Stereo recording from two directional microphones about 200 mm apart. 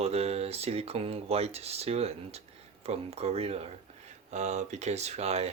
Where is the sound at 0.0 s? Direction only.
30° right (ahead or behind).